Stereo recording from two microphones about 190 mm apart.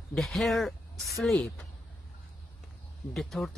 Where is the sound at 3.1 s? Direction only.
Centre (ahead or behind).